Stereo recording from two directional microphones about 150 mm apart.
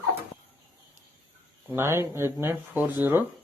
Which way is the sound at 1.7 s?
15° right (ahead or behind).